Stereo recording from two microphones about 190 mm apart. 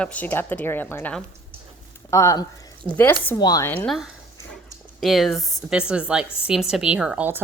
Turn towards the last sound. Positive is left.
turn(degrees=-5)  # may be behind; listen again after turning